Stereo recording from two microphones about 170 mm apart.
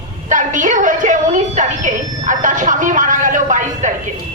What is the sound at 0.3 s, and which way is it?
A woman's voice, 50° right (ahead or behind).